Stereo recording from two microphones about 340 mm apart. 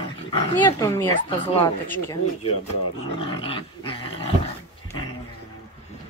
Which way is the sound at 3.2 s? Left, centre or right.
Centre.